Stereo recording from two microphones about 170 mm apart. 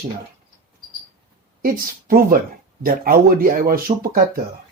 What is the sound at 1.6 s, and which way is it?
Speech, 60° right (ahead or behind).